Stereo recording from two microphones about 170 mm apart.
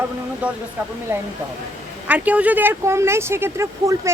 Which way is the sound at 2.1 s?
10° right (ahead or behind).